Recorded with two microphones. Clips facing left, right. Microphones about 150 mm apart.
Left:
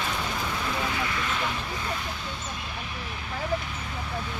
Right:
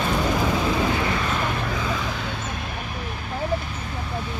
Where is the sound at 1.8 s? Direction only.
90° right; by 2.5 s 70° right (ahead or behind).